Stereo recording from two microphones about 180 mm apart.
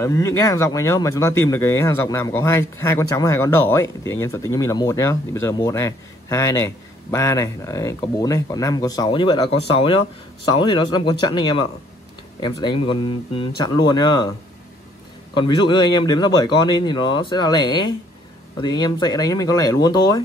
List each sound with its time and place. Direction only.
0.0 s speech: 15° left (ahead or behind)
15.3 s speech: 25° left (ahead or behind)